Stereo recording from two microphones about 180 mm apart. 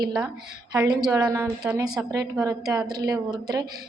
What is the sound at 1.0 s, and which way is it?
A woman's voice, 20° right (ahead or behind).